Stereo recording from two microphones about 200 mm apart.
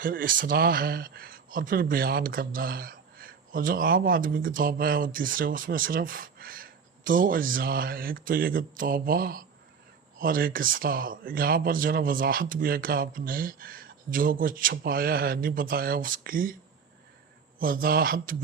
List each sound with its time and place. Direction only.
0.0 s speech: 45° right (ahead or behind)
17.6 s speech: 45° right (ahead or behind)